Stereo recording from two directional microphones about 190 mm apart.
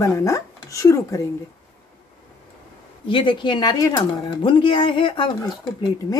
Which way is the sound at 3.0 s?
25° left (ahead or behind).